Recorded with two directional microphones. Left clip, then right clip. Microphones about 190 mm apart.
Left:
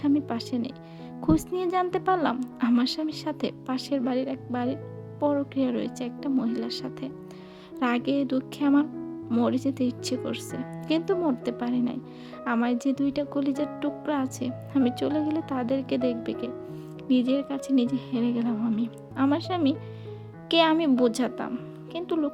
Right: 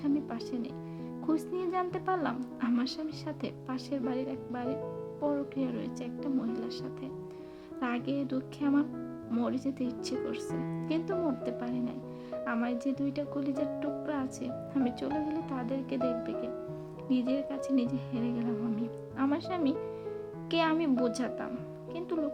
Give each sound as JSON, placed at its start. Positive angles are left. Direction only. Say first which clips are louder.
{"t": 0.0, "sound": "speech", "louder": "left 7 dB", "side_deg": 40}